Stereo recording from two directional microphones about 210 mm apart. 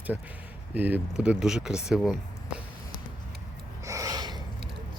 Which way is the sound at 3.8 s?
15° right (ahead or behind).